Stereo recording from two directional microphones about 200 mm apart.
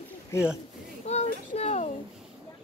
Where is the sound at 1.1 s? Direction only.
30° left (ahead or behind).